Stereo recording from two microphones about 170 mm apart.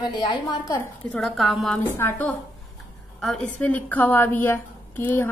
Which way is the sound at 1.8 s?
15° left (ahead or behind).